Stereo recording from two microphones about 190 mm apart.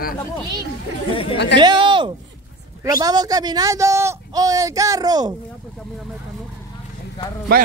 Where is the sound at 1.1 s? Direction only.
30° left (ahead or behind).